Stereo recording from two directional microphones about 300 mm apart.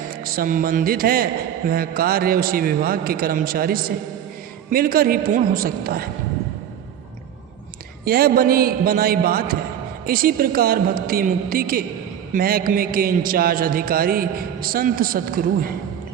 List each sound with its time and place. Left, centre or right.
0.3 s a man's voice: right
8.0 s a man's voice: right